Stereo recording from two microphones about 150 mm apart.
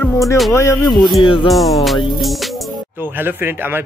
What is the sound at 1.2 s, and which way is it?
Speech, 35° left (ahead or behind).